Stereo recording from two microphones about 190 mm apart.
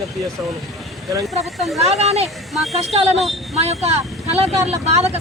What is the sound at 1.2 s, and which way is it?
Speech, centre (ahead or behind).